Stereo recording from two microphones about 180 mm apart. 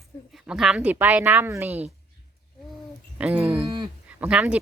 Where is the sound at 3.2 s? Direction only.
10° right (ahead or behind).